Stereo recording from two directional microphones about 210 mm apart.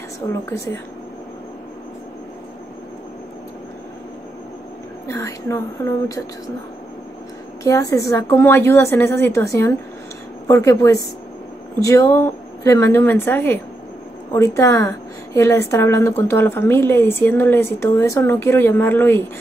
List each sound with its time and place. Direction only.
0.2 s a woman's voice: 15° left (ahead or behind)
5.0 s a woman's voice: 15° left (ahead or behind)
7.6 s a woman's voice: 15° left (ahead or behind)